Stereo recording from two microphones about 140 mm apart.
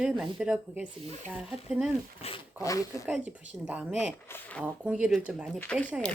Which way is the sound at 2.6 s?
25° left (ahead or behind).